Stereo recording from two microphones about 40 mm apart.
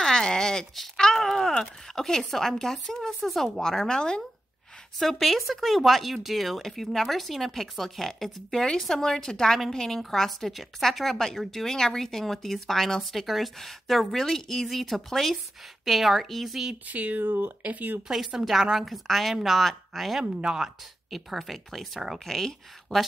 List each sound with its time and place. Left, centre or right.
0.0 s a sound: centre
0.9 s wail: centre
1.6 s speech: centre
4.9 s a woman's voice: centre
16.9 s speech: right
18.0 s a woman's voice: centre
20.3 s speech: right
20.6 s a woman's voice: centre
22.2 s a woman's voice: centre